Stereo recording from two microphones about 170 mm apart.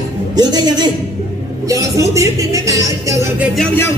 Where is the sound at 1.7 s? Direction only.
20° right (ahead or behind).